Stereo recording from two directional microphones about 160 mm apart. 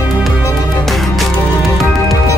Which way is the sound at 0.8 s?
Centre (ahead or behind).